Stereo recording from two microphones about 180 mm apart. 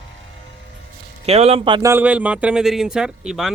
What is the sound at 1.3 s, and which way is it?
Speech, 35° right (ahead or behind).